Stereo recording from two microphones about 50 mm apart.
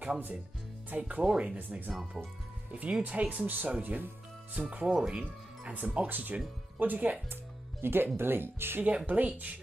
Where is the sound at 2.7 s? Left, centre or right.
Right.